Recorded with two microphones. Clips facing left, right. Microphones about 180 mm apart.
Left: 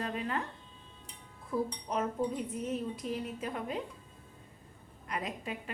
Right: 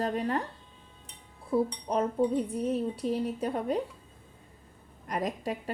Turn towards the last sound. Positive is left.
turn(degrees=-40)  # may be behind; listen again after turning